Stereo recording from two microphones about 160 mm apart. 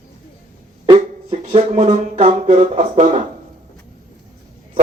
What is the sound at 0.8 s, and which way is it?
Speech, 35° right (ahead or behind).